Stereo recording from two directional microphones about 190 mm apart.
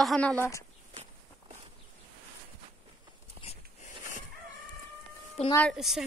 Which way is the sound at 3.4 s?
35° right (ahead or behind).